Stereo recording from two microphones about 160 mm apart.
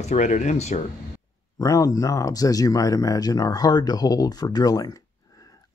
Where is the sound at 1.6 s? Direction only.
20° left (ahead or behind).